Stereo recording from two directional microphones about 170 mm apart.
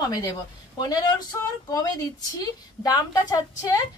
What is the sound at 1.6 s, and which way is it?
A woman's voice, 20° left (ahead or behind).